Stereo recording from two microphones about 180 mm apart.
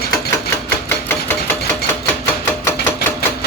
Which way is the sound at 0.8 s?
10° left (ahead or behind).